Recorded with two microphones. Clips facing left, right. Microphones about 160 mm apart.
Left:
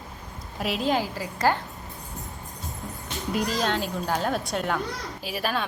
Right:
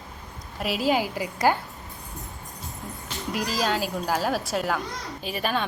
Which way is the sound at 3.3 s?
5° right (ahead or behind).